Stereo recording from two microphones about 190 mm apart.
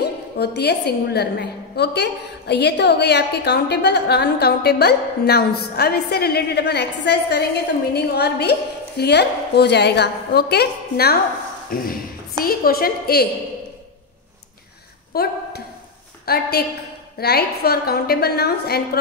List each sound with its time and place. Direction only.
0.4 s a woman's voice: 60° left (ahead or behind)
15.1 s a woman's voice: 55° left (ahead or behind)